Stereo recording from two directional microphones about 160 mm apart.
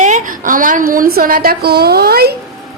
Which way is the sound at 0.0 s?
50° right (ahead or behind).